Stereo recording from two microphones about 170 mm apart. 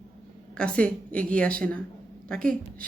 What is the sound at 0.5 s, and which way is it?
A woman's voice, 5° left (ahead or behind).